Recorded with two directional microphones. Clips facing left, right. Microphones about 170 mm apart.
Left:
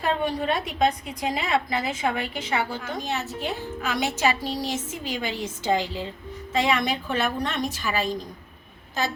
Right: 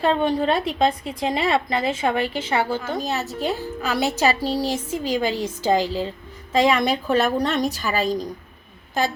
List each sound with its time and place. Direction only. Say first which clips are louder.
0.0 s a woman's voice: right 5 dB; 30° right (ahead or behind)